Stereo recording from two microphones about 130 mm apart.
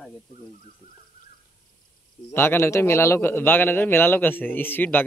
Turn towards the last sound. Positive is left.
turn(degrees=15)  # may be behind; listen again after turning